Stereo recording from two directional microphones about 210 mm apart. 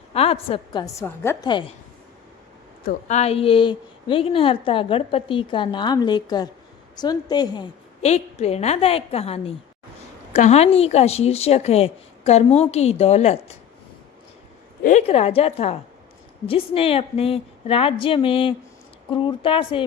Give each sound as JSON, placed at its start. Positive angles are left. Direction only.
{"t": 0.1, "sound": "a woman's voice", "side_deg": 25}
{"t": 2.8, "sound": "a woman's voice", "side_deg": 35}
{"t": 14.8, "sound": "a woman's voice", "side_deg": 30}